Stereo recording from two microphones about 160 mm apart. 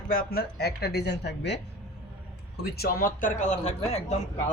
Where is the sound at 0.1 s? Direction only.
65° left (ahead or behind); by 1.5 s 90° left.